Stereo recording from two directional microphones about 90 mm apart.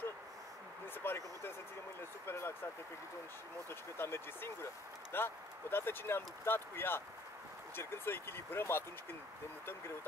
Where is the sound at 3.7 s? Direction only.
25° left (ahead or behind).